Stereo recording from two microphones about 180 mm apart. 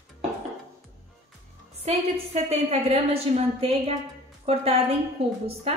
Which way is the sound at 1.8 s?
35° right (ahead or behind).